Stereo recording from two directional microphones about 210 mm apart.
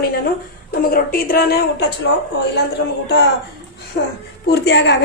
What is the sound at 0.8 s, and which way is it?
A woman's voice, 45° left (ahead or behind).